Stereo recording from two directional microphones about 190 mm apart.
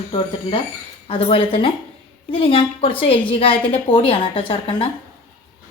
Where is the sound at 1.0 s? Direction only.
30° left (ahead or behind).